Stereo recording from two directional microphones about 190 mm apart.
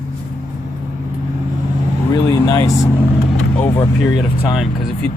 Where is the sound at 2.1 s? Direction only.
20° left (ahead or behind).